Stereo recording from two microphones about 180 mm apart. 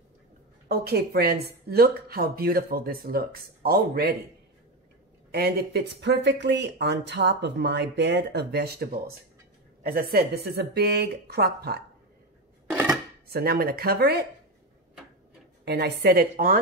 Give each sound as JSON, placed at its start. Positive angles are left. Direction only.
{"t": 0.7, "sound": "speech", "side_deg": -60}
{"t": 5.3, "sound": "speech", "side_deg": -65}
{"t": 13.3, "sound": "speech", "side_deg": -60}
{"t": 15.6, "sound": "speech", "side_deg": -65}